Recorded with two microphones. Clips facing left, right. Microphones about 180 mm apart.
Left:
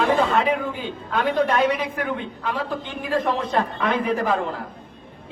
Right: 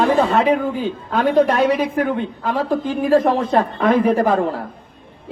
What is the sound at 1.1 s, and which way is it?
A woman's voice, 40° right (ahead or behind).